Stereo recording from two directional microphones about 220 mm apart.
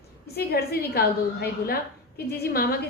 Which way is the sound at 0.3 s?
45° left (ahead or behind).